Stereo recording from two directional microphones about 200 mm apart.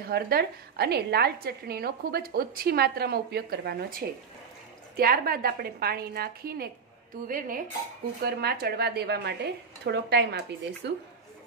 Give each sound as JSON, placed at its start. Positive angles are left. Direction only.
{"t": 0.0, "sound": "a woman's voice", "side_deg": -50}